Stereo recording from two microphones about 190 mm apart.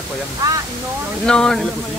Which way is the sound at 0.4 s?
20° right (ahead or behind).